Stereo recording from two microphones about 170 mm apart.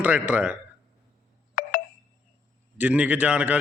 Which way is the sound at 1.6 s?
55° left (ahead or behind).